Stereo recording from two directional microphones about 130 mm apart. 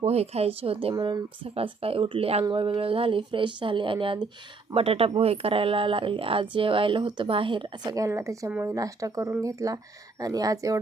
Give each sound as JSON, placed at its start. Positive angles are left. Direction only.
{"t": 0.0, "sound": "speech", "side_deg": -55}
{"t": 0.9, "sound": "speech", "side_deg": -30}
{"t": 1.5, "sound": "speech", "side_deg": -50}
{"t": 7.9, "sound": "speech", "side_deg": -25}